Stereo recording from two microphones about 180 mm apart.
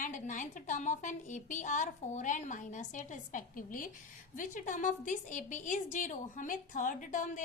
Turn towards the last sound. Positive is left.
turn(degrees=45)  # may be behind; listen again after turning